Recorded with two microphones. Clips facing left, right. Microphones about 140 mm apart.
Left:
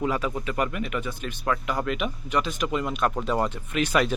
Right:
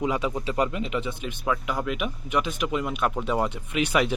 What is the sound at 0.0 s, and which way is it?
Speech, 15° right (ahead or behind).